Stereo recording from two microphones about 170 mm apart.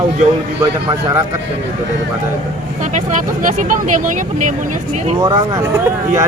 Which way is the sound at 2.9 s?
50° right (ahead or behind).